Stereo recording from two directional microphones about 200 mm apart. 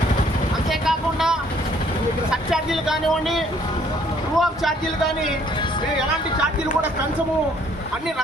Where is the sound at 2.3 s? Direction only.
Centre (ahead or behind).